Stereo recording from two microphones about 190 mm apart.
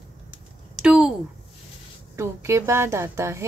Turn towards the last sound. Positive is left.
turn(degrees=-15)  # may be behind; listen again after turning